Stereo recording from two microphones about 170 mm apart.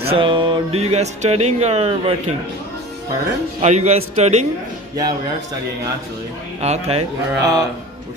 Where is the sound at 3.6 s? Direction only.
40° right (ahead or behind).